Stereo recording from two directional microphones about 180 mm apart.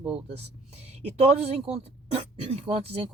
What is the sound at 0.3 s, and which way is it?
Speech, 35° right (ahead or behind).